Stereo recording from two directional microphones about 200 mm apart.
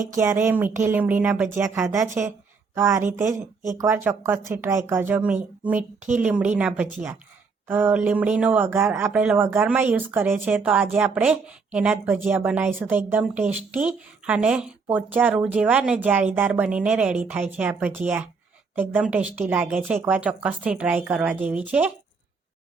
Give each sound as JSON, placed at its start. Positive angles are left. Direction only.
{"t": 0.1, "sound": "speech", "side_deg": -15}
{"t": 3.3, "sound": "speech", "side_deg": -40}
{"t": 3.8, "sound": "speech", "side_deg": -10}